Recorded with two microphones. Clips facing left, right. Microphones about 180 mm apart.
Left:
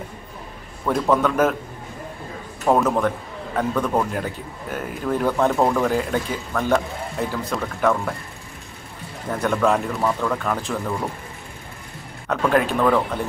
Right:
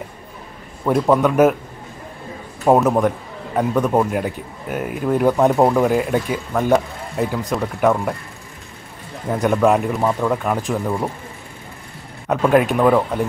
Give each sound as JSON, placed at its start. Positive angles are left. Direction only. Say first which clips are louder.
{"t": 0.8, "sound": "speech", "louder": "right 4 dB", "side_deg": -15}
{"t": 2.6, "sound": "a man's voice", "louder": "right 4 dB", "side_deg": -20}
{"t": 9.3, "sound": "speech", "louder": "right 4 dB", "side_deg": -15}
{"t": 12.3, "sound": "speech", "louder": "right 4 dB", "side_deg": -15}